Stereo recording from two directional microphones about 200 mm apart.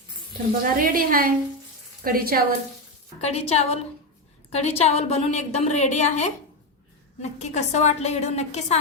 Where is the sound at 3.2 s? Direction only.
30° left (ahead or behind).